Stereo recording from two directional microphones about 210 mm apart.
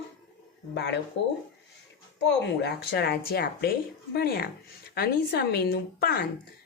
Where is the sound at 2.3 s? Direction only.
50° left (ahead or behind).